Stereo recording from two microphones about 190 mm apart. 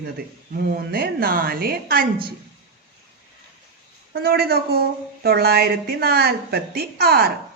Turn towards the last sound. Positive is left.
turn(degrees=-55)  # may be behind; listen again after turning